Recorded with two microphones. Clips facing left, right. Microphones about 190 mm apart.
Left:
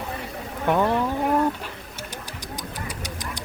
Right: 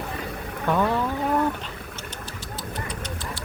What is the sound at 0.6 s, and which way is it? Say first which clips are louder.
Speech: left 2 dB; 15° left (ahead or behind).